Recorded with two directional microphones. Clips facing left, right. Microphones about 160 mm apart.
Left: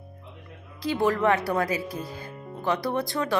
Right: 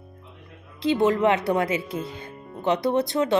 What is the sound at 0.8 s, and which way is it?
Speech, 20° right (ahead or behind).